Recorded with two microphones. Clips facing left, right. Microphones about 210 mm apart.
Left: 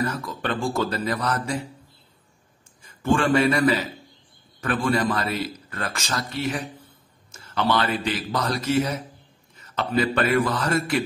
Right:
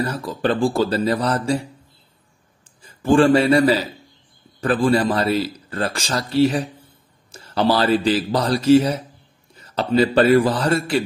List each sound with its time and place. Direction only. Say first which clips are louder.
0.0 s a man's voice: right 5 dB; 30° right (ahead or behind)
2.8 s a man's voice: right 7 dB; 30° right (ahead or behind)